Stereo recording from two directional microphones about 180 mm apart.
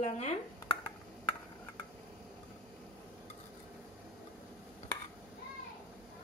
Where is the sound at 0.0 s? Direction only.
35° left (ahead or behind).